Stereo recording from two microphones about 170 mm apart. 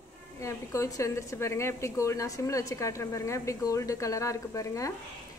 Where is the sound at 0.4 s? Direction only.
15° left (ahead or behind).